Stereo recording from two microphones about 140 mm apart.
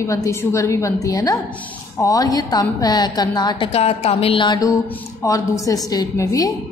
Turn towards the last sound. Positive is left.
turn(degrees=25)  # may be behind; listen again after turning